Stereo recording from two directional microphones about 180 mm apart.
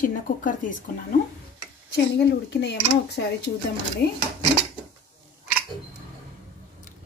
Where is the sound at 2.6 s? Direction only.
70° left (ahead or behind).